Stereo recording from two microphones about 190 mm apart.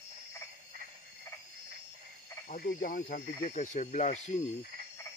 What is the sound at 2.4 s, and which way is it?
Speech, 45° left (ahead or behind).